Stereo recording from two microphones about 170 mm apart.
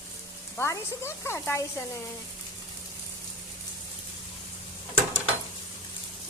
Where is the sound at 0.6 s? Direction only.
15° left (ahead or behind).